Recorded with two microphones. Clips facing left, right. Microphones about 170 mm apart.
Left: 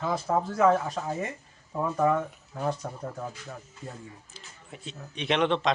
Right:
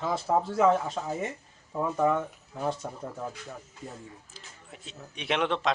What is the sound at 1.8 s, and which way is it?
Speech, 10° right (ahead or behind).